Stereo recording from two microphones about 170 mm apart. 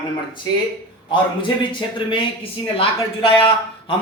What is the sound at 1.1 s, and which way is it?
A man's voice, 30° left (ahead or behind).